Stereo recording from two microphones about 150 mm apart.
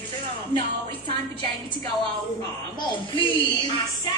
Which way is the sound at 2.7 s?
35° left (ahead or behind).